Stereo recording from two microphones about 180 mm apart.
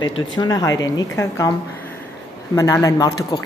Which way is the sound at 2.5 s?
15° left (ahead or behind).